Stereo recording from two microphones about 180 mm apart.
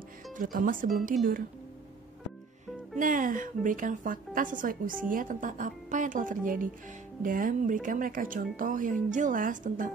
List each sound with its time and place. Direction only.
0.4 s speech: 50° right (ahead or behind)
3.0 s speech: 50° right (ahead or behind)